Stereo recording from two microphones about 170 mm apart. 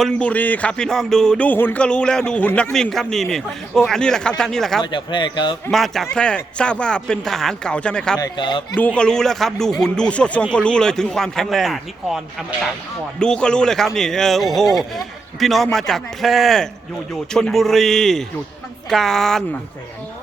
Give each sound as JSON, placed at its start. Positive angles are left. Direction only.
{"t": 0.0, "sound": "speech", "side_deg": 5}
{"t": 4.8, "sound": "speech", "side_deg": 30}
{"t": 5.7, "sound": "speech", "side_deg": 0}
{"t": 8.2, "sound": "speech", "side_deg": 25}
{"t": 9.0, "sound": "speech", "side_deg": 5}